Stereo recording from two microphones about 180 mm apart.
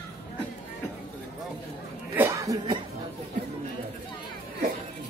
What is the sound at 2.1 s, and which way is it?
Cough, 15° right (ahead or behind).